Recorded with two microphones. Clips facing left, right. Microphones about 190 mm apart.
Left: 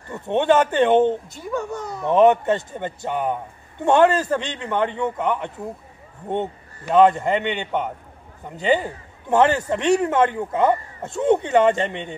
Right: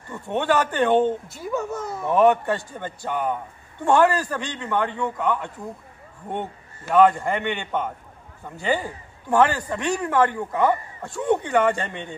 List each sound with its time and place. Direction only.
0.1 s a man's voice: 20° left (ahead or behind)
1.3 s speech: centre (ahead or behind)
2.0 s a man's voice: 20° left (ahead or behind)